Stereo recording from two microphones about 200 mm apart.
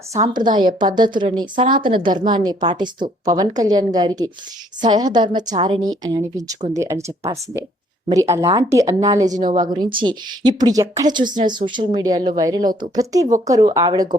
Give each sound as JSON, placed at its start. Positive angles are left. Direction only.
{"t": 0.8, "sound": "a woman's voice", "side_deg": -20}